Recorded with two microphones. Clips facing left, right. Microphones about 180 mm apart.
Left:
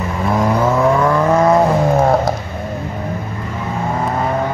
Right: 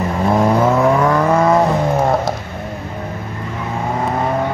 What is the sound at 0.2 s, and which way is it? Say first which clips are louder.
Vehicle: right 2 dB; 25° right (ahead or behind).